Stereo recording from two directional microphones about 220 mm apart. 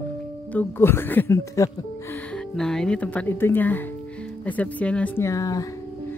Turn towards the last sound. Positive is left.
turn(degrees=15)  # may be behind; listen again after turning